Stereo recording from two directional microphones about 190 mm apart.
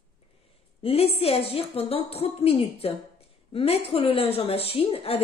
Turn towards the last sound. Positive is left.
turn(degrees=30)  # may be behind; listen again after turning